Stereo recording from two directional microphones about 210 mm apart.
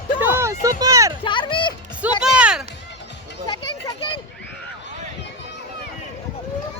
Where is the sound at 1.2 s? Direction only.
25° left (ahead or behind).